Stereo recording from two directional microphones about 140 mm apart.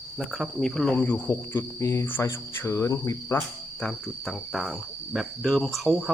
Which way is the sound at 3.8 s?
5° left (ahead or behind).